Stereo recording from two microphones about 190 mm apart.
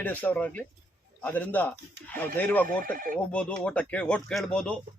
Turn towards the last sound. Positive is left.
turn(degrees=5)  # may be behind; listen again after turning